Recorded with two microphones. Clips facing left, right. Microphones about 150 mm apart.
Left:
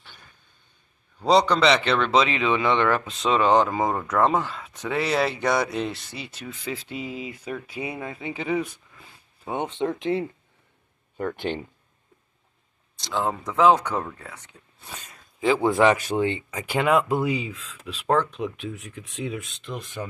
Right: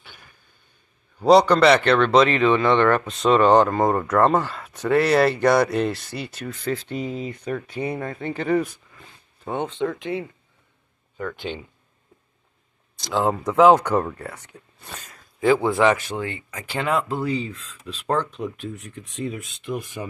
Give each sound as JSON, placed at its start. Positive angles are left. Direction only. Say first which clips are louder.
{"t": 0.0, "sound": "a sound", "louder": "right 2 dB", "side_deg": -10}
{"t": 1.2, "sound": "speech", "louder": "right 5 dB", "side_deg": -5}
{"t": 9.8, "sound": "speech", "louder": "left 1 dB", "side_deg": 25}
{"t": 11.5, "sound": "speech", "louder": "left 3 dB", "side_deg": 60}
{"t": 12.9, "sound": "a sound", "louder": "right 4 dB", "side_deg": -5}
{"t": 13.3, "sound": "speech", "louder": "right 4 dB", "side_deg": -10}
{"t": 15.0, "sound": "a sound", "louder": "right 4 dB", "side_deg": 20}
{"t": 16.1, "sound": "speech", "louder": "left 5 dB", "side_deg": 20}
{"t": 19.6, "sound": "speech", "louder": "right 4 dB", "side_deg": -10}